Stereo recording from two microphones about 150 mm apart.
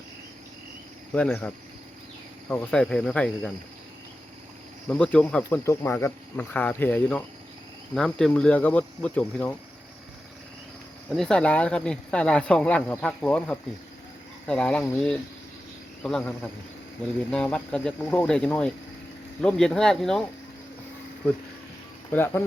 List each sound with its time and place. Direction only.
1.1 s speech: 10° left (ahead or behind)
4.9 s speech: 10° left (ahead or behind)
11.1 s speech: 5° left (ahead or behind)
16.0 s speech: 5° left (ahead or behind)
22.1 s speech: 15° left (ahead or behind)